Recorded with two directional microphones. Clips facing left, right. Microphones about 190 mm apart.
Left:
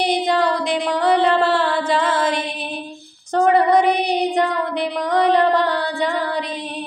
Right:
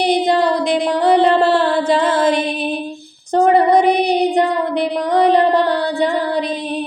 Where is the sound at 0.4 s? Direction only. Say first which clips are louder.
Right 4 dB; 35° right (ahead or behind).